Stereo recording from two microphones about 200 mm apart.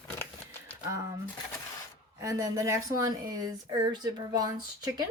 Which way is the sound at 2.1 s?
15° right (ahead or behind).